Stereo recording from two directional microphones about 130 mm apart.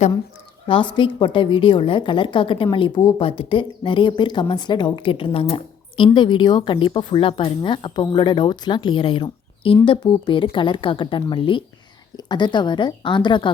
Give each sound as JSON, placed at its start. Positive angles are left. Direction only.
{"t": 0.7, "sound": "speech", "side_deg": 40}